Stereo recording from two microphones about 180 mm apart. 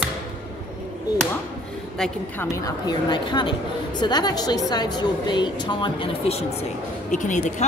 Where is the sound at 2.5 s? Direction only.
25° left (ahead or behind).